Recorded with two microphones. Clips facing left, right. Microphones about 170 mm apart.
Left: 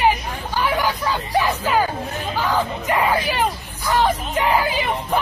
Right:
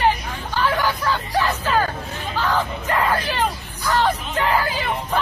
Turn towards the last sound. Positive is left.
turn(degrees=15)  # may be behind; listen again after turning